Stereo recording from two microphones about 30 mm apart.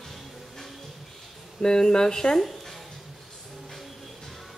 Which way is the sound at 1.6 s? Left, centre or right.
Left.